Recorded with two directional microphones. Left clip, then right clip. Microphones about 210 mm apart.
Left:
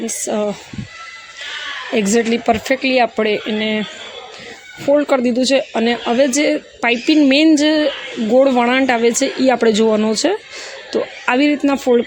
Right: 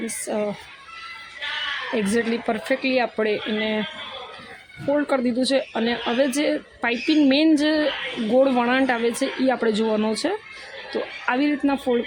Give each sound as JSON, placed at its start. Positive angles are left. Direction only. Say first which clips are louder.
{"t": 0.0, "sound": "speech", "louder": "left 6 dB", "side_deg": 35}
{"t": 2.0, "sound": "speech", "louder": "left 9 dB", "side_deg": 35}
{"t": 4.9, "sound": "speech", "louder": "left 8 dB", "side_deg": 30}